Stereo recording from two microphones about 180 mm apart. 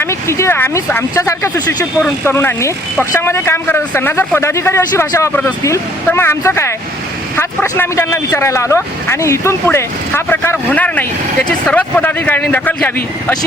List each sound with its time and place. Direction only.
0.0 s speech: 15° left (ahead or behind)